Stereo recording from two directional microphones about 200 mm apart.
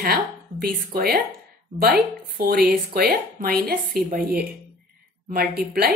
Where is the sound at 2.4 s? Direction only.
50° right (ahead or behind).